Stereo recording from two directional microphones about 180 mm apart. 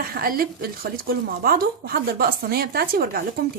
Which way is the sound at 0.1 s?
55° right (ahead or behind).